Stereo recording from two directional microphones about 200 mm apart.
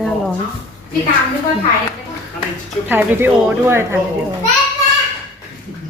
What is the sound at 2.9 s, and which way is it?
Speech, 10° right (ahead or behind).